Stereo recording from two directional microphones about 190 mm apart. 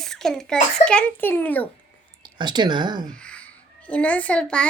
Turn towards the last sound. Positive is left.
turn(degrees=5)  # may be behind; listen again after turning